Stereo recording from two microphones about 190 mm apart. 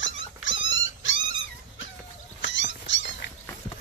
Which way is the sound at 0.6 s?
85° left.